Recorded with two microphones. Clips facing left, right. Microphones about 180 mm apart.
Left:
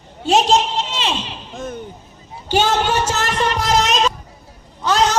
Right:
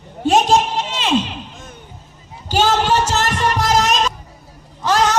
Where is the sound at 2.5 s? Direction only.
40° right (ahead or behind).